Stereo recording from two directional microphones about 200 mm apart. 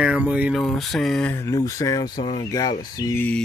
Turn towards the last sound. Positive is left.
turn(degrees=10)  # may be behind; listen again after turning